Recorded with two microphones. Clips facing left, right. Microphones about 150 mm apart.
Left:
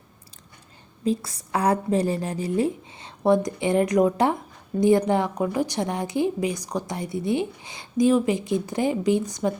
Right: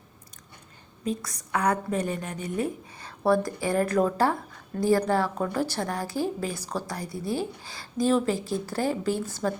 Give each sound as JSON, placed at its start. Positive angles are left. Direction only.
{"t": 1.0, "sound": "a woman's voice", "side_deg": 30}